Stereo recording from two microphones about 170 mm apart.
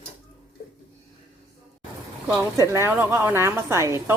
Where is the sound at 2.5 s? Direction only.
15° right (ahead or behind).